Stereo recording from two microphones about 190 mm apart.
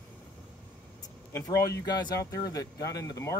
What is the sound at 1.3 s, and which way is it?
Speech, 20° left (ahead or behind).